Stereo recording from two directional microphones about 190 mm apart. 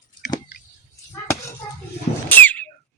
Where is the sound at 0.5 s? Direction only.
60° left (ahead or behind).